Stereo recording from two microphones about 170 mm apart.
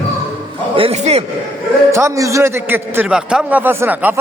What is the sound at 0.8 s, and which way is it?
Speech, 35° right (ahead or behind).